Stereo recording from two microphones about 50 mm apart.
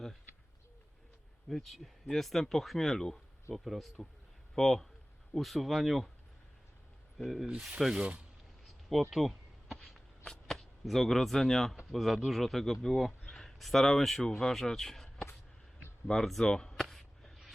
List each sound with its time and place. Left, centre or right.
1.5 s speech: centre
3.5 s speech: centre
7.2 s speech: centre
7.4 s rub: centre
7.9 s speech: right
8.6 s a sound: centre
10.2 s speech: centre
16.9 s a sound: centre